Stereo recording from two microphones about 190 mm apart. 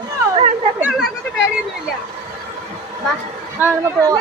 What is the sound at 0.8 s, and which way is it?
Speech, 10° right (ahead or behind).